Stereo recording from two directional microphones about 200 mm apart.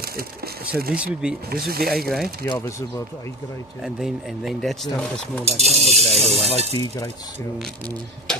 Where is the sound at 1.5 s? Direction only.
50° right (ahead or behind).